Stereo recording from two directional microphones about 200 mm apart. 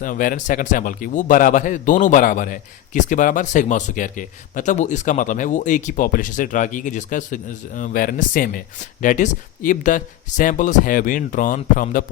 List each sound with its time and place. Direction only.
0.0 s a man's voice: 45° left (ahead or behind)